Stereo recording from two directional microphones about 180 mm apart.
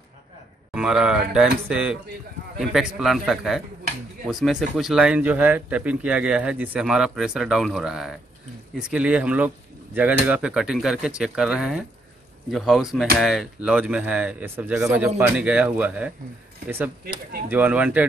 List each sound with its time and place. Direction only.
0.7 s a man's voice: 5° right (ahead or behind)
3.0 s a man's voice: centre (ahead or behind)
17.0 s speech: 60° right (ahead or behind)
17.5 s speech: 10° right (ahead or behind)